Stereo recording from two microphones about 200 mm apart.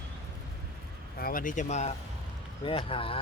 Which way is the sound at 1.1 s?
45° left (ahead or behind).